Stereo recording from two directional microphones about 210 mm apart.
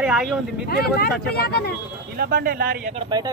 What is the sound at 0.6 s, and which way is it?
Speech, 45° left (ahead or behind).